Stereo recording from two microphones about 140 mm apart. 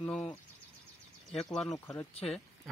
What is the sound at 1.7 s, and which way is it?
Speech, 25° left (ahead or behind).